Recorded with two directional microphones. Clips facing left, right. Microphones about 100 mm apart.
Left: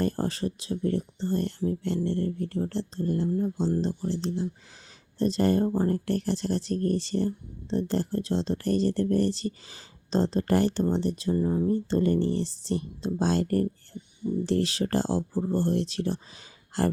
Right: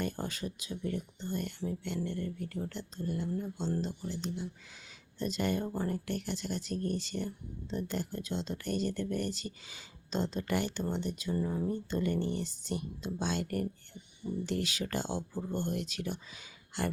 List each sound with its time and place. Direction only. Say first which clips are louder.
0.0 s speech: left 9 dB; 35° left (ahead or behind)